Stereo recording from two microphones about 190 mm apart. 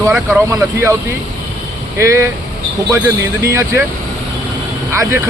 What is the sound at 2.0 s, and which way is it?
Speech, 15° right (ahead or behind).